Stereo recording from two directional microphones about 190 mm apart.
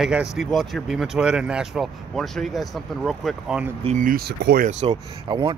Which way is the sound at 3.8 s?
40° right (ahead or behind).